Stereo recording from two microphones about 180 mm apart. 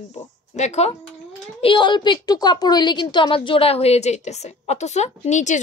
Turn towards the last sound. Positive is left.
turn(degrees=40)  # may be behind; listen again after turning